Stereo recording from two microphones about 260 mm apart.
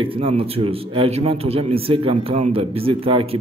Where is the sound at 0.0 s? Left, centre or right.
Right.